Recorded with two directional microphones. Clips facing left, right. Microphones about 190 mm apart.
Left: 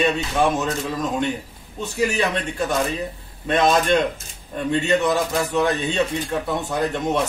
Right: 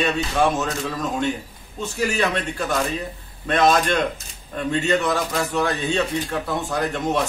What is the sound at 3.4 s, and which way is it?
A man's voice, 20° left (ahead or behind).